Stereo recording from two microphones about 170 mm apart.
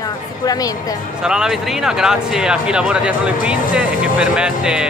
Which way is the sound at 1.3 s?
5° right (ahead or behind).